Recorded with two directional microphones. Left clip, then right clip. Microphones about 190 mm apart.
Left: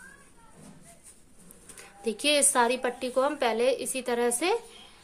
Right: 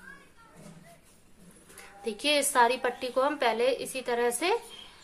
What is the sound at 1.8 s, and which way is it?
A woman's voice, 30° left (ahead or behind).